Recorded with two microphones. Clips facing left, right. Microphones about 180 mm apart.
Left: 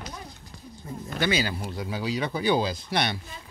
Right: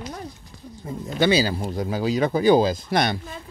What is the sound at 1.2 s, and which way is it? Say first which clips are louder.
Speech: right 7 dB; 30° right (ahead or behind).